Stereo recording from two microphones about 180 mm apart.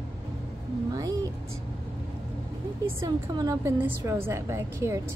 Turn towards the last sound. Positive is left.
turn(degrees=-15)  # may be behind; listen again after turning